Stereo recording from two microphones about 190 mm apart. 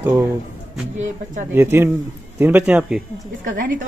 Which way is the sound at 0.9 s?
40° right (ahead or behind).